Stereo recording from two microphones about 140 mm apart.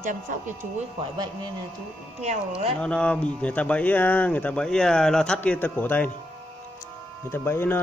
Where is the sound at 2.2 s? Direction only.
55° right (ahead or behind).